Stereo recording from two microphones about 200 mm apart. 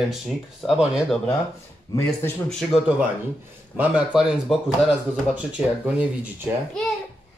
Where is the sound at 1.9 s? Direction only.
15° left (ahead or behind).